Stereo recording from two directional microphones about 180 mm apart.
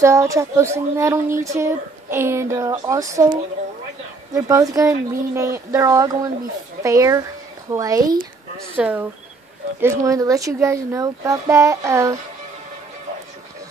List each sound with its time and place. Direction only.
0.0 s speech: 15° right (ahead or behind)